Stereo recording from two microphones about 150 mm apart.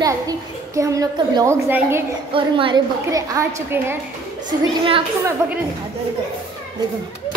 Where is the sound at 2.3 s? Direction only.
35° right (ahead or behind); by 3.9 s 15° right (ahead or behind).